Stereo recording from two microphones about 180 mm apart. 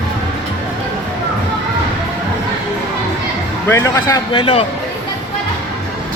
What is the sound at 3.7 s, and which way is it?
Speech, 15° left (ahead or behind).